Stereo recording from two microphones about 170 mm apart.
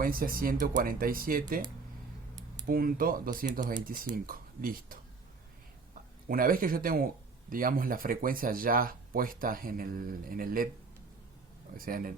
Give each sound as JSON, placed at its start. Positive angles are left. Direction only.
{"t": 0.0, "sound": "speech", "side_deg": -55}
{"t": 2.6, "sound": "speech", "side_deg": -60}
{"t": 11.8, "sound": "speech", "side_deg": -55}